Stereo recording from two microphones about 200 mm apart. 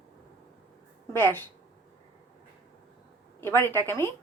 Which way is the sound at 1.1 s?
10° left (ahead or behind).